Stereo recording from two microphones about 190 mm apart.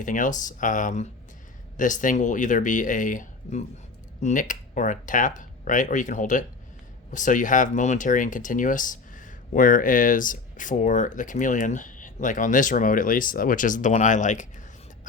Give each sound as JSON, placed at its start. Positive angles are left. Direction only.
{"t": 0.0, "sound": "speech", "side_deg": 45}